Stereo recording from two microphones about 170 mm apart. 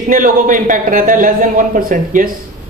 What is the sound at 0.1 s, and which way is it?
Speech, 50° right (ahead or behind).